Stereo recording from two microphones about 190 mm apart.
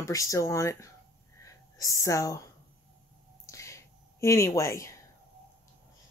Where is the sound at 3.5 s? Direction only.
15° left (ahead or behind).